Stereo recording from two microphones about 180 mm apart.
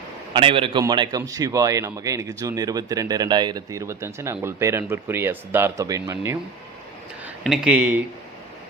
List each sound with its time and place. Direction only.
0.3 s a man's voice: 30° right (ahead or behind)
7.3 s speech: 5° right (ahead or behind)